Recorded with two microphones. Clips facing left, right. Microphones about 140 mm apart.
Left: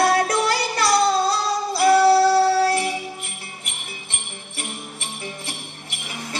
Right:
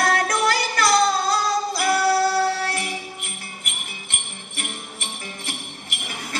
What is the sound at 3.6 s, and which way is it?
Jingle bell, 30° left (ahead or behind).